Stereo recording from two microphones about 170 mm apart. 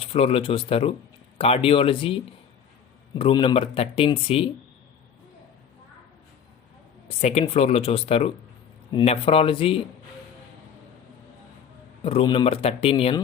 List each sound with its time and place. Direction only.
0.0 s speech: 35° left (ahead or behind)
7.1 s speech: 40° left (ahead or behind)
12.0 s speech: 35° left (ahead or behind)